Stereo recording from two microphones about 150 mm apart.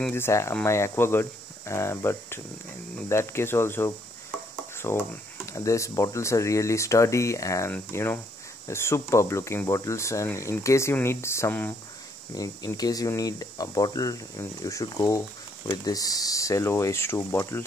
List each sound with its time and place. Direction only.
0.0 s speech: 15° left (ahead or behind)